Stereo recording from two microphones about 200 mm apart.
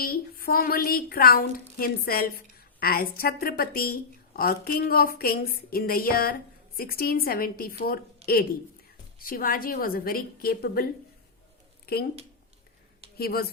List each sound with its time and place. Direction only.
0.0 s a woman's voice: 50° left (ahead or behind)
8.2 s a sound: 30° right (ahead or behind)
9.1 s a woman's voice: 45° left (ahead or behind)
11.9 s speech: 50° left (ahead or behind)
13.1 s a woman's voice: 50° left (ahead or behind)